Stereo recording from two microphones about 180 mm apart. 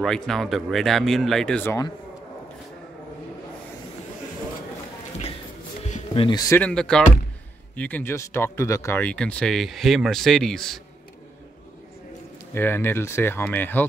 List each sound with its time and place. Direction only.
0.0 s speech: 5° left (ahead or behind)
5.9 s a sound: 40° left (ahead or behind)
6.2 s speech: 20° left (ahead or behind)
6.6 s speech: 5° left (ahead or behind)
12.5 s speech: 10° left (ahead or behind)